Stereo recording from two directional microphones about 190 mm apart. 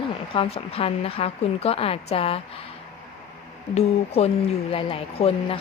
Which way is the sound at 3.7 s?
35° left (ahead or behind).